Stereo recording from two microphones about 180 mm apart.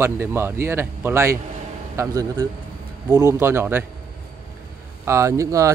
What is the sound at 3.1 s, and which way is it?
Speech, 20° right (ahead or behind).